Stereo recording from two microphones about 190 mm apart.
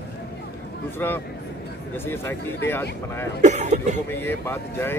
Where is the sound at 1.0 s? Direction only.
10° left (ahead or behind).